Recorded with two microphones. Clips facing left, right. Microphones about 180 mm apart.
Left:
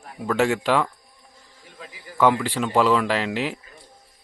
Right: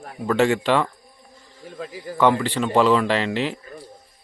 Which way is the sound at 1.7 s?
40° right (ahead or behind).